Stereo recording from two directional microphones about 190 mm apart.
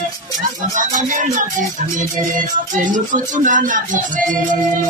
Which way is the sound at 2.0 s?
45° right (ahead or behind).